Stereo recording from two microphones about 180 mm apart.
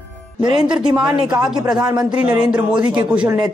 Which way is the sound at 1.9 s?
20° right (ahead or behind).